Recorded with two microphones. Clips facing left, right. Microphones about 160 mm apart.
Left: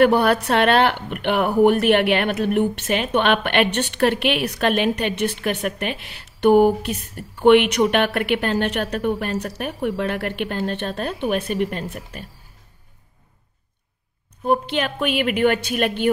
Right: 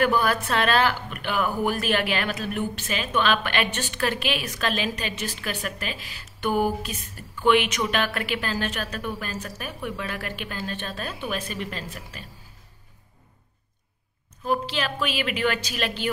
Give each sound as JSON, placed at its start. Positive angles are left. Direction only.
{"t": 0.0, "sound": "speech", "side_deg": 65}
{"t": 14.4, "sound": "speech", "side_deg": 55}